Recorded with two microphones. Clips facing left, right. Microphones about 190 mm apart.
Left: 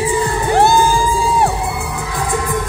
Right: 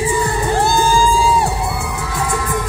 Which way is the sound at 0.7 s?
90° right.